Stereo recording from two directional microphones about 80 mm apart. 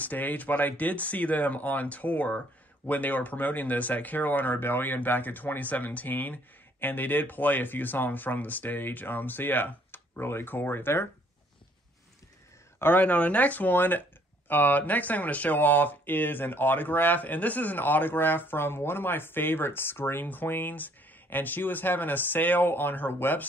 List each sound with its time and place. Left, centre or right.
0.0 s speech: left
12.7 s speech: left